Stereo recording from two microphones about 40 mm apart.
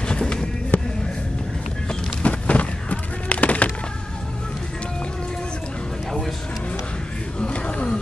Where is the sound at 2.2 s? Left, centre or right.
Left.